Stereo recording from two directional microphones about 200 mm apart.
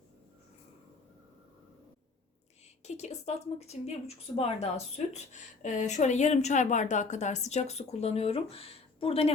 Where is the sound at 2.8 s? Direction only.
35° left (ahead or behind).